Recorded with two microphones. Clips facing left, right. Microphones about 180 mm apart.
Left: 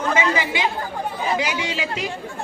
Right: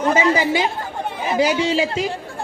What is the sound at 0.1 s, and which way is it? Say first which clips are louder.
A man's voice: right 5 dB; 35° right (ahead or behind).